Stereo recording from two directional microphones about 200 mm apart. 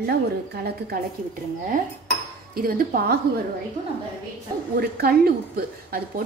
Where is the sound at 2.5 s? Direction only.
45° right (ahead or behind).